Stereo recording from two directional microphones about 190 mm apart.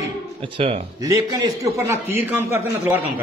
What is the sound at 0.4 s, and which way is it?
Speech, 30° right (ahead or behind).